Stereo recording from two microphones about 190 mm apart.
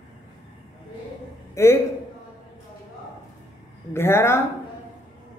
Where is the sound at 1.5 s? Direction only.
15° left (ahead or behind).